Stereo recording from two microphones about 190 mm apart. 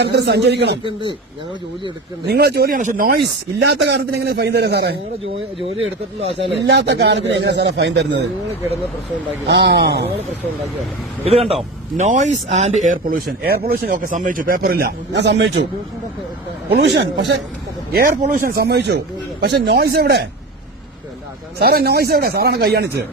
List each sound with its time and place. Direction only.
0.0 s speech: 60° right (ahead or behind)
2.2 s speech: 55° right (ahead or behind)
5.7 s speech: 30° right (ahead or behind)
6.4 s speech: 65° right (ahead or behind)
9.5 s speech: 65° right (ahead or behind)
11.3 s a man's voice: 30° right (ahead or behind); by 15.6 s 65° right (ahead or behind)
16.6 s speech: 60° right (ahead or behind)
18.2 s speech: 45° right (ahead or behind)
21.6 s speech: 55° right (ahead or behind)